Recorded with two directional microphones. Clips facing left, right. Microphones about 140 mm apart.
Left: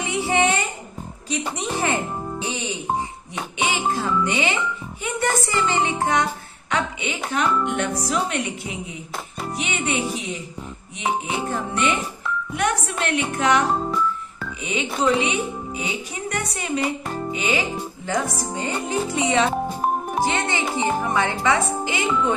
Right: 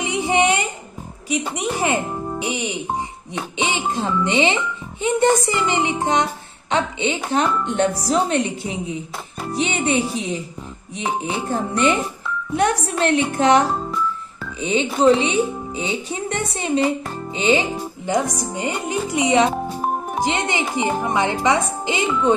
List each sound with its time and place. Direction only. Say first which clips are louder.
0.0 s a sound: right 2 dB; 20° right (ahead or behind)
1.3 s speech: right 3 dB; 10° right (ahead or behind)
18.1 s speech: right 3 dB; 15° right (ahead or behind)